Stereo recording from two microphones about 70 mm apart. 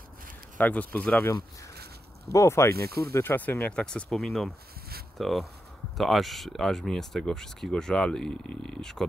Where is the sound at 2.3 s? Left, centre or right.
Left.